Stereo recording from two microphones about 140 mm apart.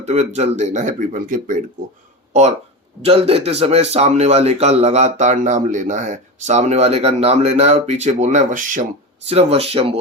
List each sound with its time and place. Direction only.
0.0 s speech: 50° right (ahead or behind); by 1.6 s 70° right (ahead or behind)
3.0 s speech: 45° right (ahead or behind); by 8.9 s 65° right (ahead or behind)
9.2 s speech: 45° right (ahead or behind)